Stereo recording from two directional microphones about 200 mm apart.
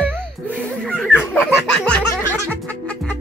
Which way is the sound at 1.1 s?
10° left (ahead or behind).